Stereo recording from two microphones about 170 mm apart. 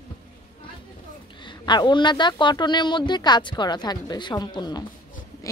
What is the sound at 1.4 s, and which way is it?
A woman's voice, 25° left (ahead or behind).